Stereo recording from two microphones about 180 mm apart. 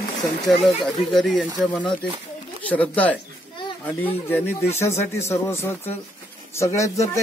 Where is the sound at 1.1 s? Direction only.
Centre (ahead or behind).